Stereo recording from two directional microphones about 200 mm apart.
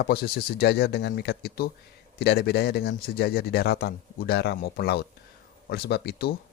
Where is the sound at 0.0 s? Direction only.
50° left (ahead or behind).